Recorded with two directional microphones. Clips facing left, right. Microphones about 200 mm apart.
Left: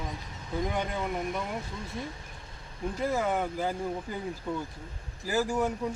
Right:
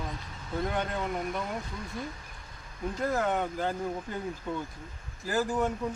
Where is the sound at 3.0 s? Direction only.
5° left (ahead or behind).